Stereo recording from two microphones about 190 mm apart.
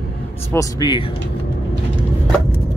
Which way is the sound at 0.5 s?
20° left (ahead or behind).